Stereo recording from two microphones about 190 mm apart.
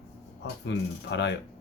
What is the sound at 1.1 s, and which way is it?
Speech, 70° left (ahead or behind).